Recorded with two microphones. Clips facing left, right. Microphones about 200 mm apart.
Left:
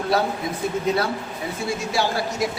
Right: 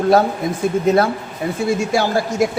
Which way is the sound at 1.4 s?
55° right (ahead or behind).